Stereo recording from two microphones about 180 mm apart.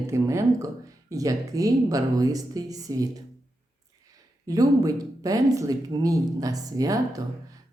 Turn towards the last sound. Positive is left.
turn(degrees=-20)  # may be behind; listen again after turning